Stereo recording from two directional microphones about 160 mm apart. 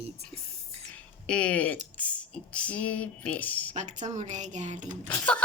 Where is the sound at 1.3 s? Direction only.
5° left (ahead or behind).